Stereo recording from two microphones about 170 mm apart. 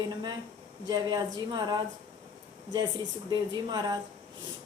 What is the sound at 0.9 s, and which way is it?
A woman's voice, 25° right (ahead or behind).